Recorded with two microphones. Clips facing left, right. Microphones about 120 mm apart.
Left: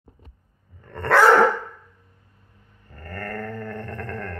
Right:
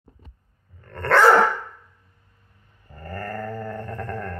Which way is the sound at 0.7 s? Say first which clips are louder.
Even; 10° left (ahead or behind).